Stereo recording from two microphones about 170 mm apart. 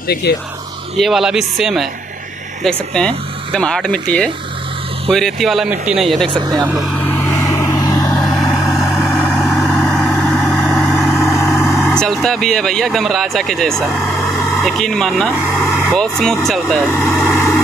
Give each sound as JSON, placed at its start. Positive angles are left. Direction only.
{"t": 0.1, "sound": "speech", "side_deg": 70}
{"t": 0.9, "sound": "speech", "side_deg": 0}
{"t": 6.2, "sound": "speech", "side_deg": -25}
{"t": 7.0, "sound": "vehicle", "side_deg": 10}
{"t": 8.2, "sound": "vehicle", "side_deg": 5}
{"t": 14.6, "sound": "speech", "side_deg": 0}
{"t": 17.1, "sound": "vehicle", "side_deg": 5}